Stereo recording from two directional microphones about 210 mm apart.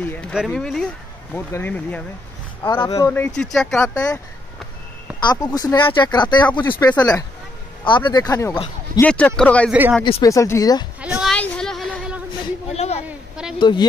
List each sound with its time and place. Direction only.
0.0 s speech: 10° left (ahead or behind)
2.6 s speech: 20° left (ahead or behind)
5.2 s speech: 20° left (ahead or behind)
9.7 s speech: 10° right (ahead or behind)
10.0 s speech: 25° left (ahead or behind)
10.3 s speech: 15° left (ahead or behind)
11.0 s a sound: 5° right (ahead or behind)
12.7 s a sound: 30° left (ahead or behind)
13.6 s speech: 20° left (ahead or behind)